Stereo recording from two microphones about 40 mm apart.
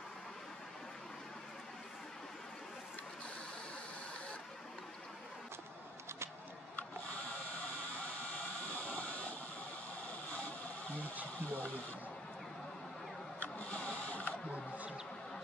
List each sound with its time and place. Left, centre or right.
8.7 s vehicle: left
11.5 s a sound: left
13.4 s printer: left